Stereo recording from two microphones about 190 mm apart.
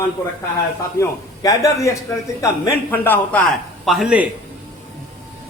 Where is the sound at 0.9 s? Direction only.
20° left (ahead or behind).